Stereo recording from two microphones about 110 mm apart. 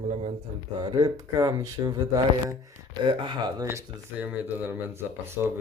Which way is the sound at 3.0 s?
45° right (ahead or behind).